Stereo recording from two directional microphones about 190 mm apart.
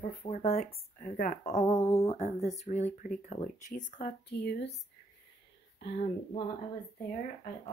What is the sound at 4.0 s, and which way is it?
Speech, 60° left (ahead or behind).